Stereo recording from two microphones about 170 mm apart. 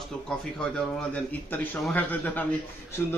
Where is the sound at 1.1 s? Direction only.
10° left (ahead or behind).